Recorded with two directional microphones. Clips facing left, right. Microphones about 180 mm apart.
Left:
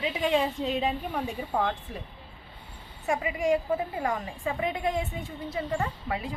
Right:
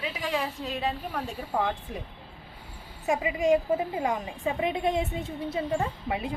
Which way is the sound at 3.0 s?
20° right (ahead or behind).